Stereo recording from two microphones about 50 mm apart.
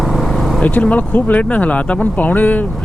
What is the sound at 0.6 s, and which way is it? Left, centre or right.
Speech, left.